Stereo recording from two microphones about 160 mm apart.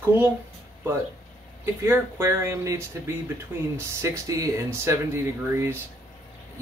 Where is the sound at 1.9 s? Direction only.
15° right (ahead or behind).